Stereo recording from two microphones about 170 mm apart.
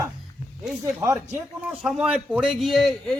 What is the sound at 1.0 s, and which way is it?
Speech, 15° right (ahead or behind).